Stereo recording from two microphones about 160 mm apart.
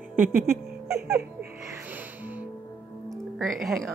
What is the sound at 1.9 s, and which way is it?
Music, 10° right (ahead or behind).